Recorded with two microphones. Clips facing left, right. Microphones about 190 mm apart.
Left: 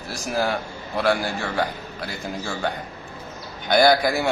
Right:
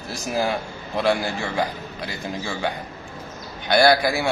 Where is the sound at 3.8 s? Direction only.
5° right (ahead or behind).